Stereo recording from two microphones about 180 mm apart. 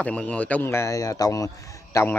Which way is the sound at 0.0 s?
5° left (ahead or behind).